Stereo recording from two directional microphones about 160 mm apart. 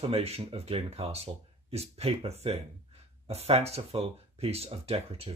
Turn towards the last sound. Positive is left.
turn(degrees=-40)  # may be behind; listen again after turning